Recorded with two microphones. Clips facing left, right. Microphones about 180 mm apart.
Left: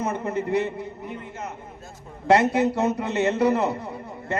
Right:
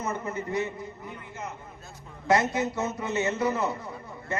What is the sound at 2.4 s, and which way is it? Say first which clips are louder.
A man's voice: left 7 dB; 60° left (ahead or behind).